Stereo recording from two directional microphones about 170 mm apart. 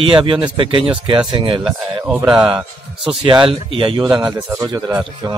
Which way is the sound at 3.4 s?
30° right (ahead or behind).